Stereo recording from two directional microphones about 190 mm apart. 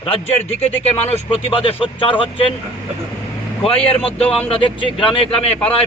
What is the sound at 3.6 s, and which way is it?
A man's voice, 30° left (ahead or behind).